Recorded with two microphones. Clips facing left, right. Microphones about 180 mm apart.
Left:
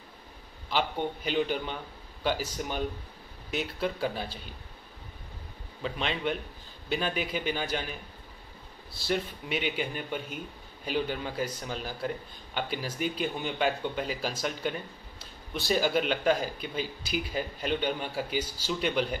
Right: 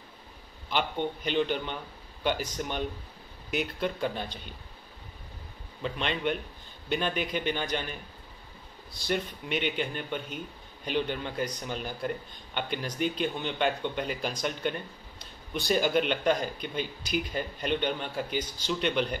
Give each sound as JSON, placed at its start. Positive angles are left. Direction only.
{"t": 0.7, "sound": "a man's voice", "side_deg": 5}
{"t": 5.8, "sound": "a man's voice", "side_deg": 0}